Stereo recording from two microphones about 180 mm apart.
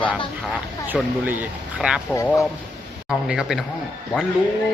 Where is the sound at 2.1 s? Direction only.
15° left (ahead or behind).